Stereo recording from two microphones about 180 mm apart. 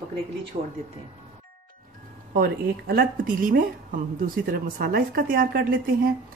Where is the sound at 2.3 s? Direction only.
55° right (ahead or behind).